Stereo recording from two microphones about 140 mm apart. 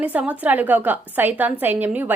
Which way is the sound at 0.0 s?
10° right (ahead or behind).